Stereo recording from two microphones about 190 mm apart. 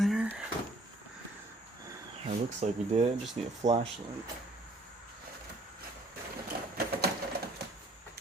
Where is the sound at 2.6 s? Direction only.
30° right (ahead or behind).